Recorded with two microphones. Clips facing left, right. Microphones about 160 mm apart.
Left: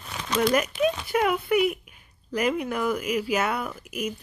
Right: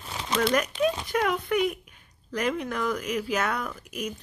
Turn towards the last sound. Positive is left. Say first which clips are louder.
# left 3 dB
turn(degrees=5)  # may be behind; listen again after turning